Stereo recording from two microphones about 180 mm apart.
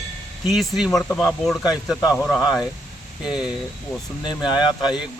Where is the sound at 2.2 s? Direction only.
Centre (ahead or behind).